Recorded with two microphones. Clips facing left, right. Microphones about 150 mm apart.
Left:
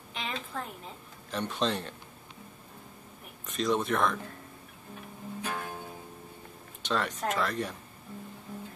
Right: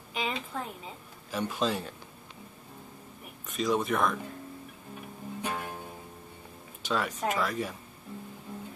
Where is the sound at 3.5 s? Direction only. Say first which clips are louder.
Even; centre (ahead or behind).